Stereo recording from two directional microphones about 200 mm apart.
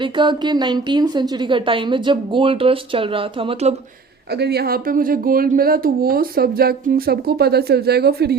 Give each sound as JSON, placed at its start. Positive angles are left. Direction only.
{"t": 0.0, "sound": "a woman's voice", "side_deg": -25}
{"t": 4.3, "sound": "speech", "side_deg": -55}